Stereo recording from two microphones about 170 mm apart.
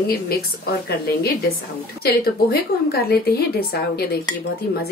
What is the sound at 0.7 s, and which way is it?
Speech, 65° left (ahead or behind).